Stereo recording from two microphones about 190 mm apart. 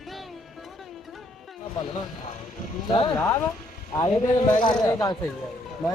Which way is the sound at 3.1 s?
10° left (ahead or behind).